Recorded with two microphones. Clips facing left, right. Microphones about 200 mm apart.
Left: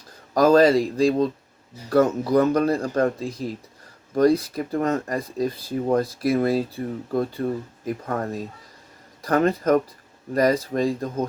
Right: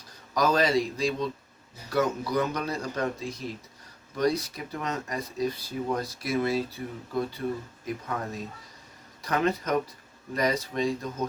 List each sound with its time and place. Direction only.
0.3 s speech: 50° left (ahead or behind)